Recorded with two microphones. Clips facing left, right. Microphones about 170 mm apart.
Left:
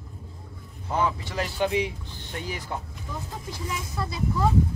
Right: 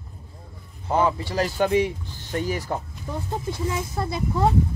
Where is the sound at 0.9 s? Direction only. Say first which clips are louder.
Right 5 dB; 35° right (ahead or behind).